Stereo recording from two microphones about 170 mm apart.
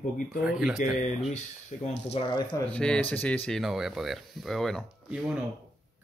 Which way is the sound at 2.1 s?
25° left (ahead or behind).